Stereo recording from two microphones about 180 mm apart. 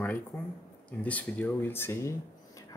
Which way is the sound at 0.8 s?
10° left (ahead or behind).